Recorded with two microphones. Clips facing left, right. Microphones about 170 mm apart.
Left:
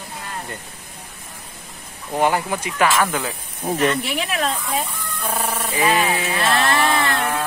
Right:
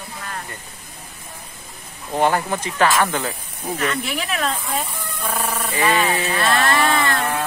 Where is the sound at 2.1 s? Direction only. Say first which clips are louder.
Even; 10° left (ahead or behind).